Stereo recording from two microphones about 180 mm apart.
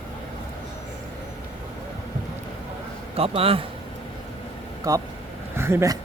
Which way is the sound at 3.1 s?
30° right (ahead or behind).